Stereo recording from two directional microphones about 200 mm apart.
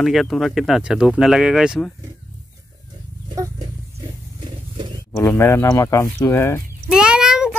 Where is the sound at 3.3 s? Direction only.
15° right (ahead or behind).